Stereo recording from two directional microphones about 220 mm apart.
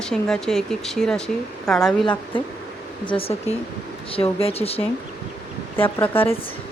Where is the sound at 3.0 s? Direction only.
25° left (ahead or behind).